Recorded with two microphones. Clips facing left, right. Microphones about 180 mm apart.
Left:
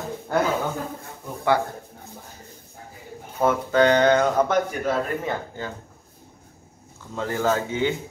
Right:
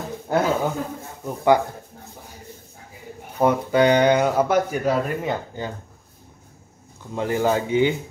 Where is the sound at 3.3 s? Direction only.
15° right (ahead or behind).